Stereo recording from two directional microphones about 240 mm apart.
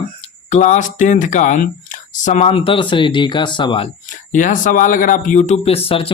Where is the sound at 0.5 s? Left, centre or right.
Left.